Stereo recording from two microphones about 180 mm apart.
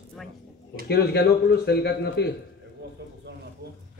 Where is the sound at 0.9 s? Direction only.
65° left (ahead or behind).